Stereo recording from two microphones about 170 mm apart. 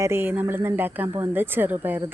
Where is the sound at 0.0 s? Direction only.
15° right (ahead or behind).